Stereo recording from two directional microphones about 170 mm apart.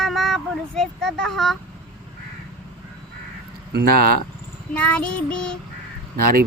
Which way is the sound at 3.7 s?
65° right (ahead or behind).